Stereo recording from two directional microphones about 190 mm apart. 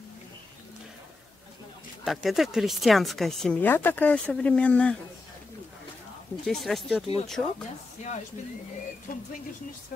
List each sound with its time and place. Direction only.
2.0 s speech: centre (ahead or behind)
6.4 s speech: centre (ahead or behind)
9.1 s speech: 50° left (ahead or behind)